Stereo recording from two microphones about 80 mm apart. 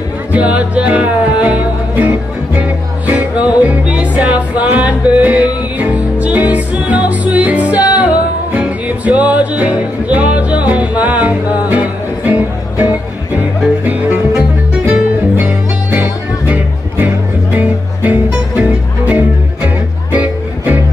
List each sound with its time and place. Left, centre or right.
0.3 s music: centre
14.9 s music: centre